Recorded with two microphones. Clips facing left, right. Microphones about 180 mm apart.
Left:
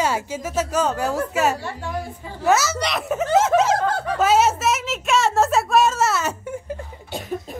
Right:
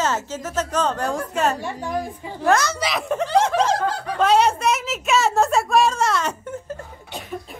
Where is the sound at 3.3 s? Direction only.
5° left (ahead or behind).